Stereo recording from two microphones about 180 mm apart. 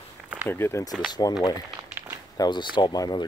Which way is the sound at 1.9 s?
10° right (ahead or behind).